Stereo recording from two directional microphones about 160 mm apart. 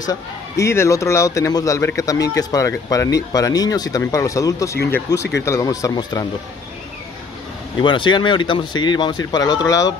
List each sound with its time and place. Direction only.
0.0 s a man's voice: 20° left (ahead or behind)
7.8 s a man's voice: 30° left (ahead or behind)